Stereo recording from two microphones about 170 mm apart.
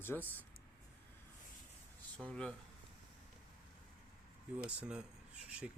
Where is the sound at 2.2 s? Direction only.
5° left (ahead or behind).